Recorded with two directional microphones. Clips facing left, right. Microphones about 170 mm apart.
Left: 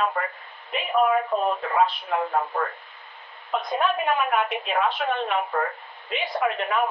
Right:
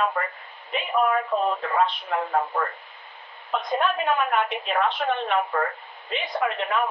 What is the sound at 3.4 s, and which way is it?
A woman's voice, centre (ahead or behind).